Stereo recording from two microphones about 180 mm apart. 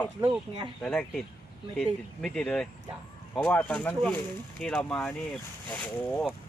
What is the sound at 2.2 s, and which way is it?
Speech, 5° left (ahead or behind).